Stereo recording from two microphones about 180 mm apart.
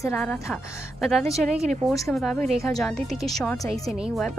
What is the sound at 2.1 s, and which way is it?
Speech, centre (ahead or behind).